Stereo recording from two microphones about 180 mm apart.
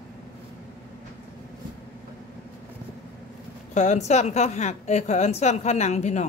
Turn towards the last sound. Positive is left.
turn(degrees=40)  # may be behind; listen again after turning